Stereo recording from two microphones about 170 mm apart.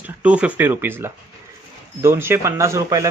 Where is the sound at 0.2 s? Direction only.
5° right (ahead or behind).